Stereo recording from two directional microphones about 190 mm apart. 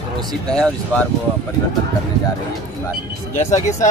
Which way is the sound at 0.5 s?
5° left (ahead or behind).